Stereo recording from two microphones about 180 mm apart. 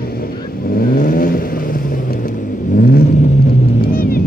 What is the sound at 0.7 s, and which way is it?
Vehicle, 55° left (ahead or behind).